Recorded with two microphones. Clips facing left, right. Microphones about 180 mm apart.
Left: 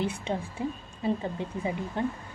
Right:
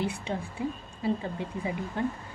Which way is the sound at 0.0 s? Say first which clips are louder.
Left 1 dB; 20° left (ahead or behind).